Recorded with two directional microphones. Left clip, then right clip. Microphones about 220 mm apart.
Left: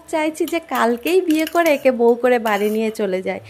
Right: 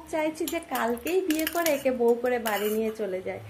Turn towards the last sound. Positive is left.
turn(degrees=45)  # may be behind; listen again after turning